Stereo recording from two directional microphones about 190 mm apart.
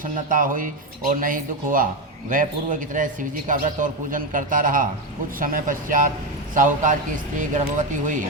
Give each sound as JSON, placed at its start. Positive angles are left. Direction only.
{"t": 0.0, "sound": "a man's voice", "side_deg": -45}